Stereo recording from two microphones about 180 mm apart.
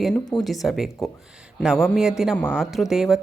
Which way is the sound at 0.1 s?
20° left (ahead or behind).